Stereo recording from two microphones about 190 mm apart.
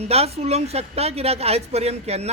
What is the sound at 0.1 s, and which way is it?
Speech, 35° right (ahead or behind).